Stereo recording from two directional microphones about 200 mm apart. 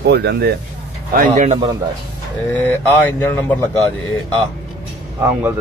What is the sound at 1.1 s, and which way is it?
Speech, 35° right (ahead or behind).